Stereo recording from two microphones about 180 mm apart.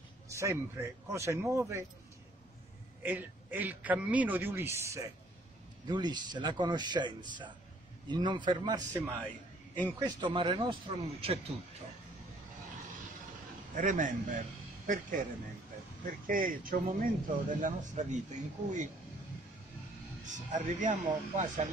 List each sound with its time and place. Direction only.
0.3 s a man's voice: 15° right (ahead or behind)
3.0 s a man's voice: 10° right (ahead or behind)
9.8 s speech: 10° left (ahead or behind)
10.2 s a man's voice: 25° right (ahead or behind)
13.7 s a man's voice: 45° right (ahead or behind)
16.3 s a man's voice: 50° right (ahead or behind)
20.2 s a man's voice: 45° right (ahead or behind)